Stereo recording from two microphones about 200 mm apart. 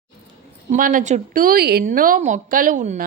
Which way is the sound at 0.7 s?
40° right (ahead or behind).